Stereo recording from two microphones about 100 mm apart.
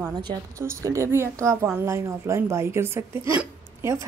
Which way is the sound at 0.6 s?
30° right (ahead or behind).